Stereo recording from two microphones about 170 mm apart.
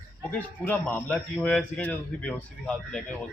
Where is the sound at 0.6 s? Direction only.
10° left (ahead or behind).